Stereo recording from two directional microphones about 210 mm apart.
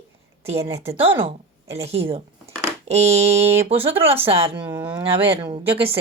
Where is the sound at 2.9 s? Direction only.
30° right (ahead or behind).